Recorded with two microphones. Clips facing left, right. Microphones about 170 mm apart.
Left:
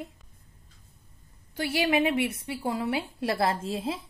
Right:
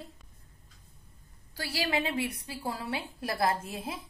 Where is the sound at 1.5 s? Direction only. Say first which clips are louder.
Left 6 dB; 20° left (ahead or behind).